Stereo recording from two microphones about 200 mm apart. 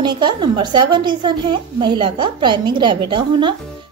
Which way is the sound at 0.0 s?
20° right (ahead or behind).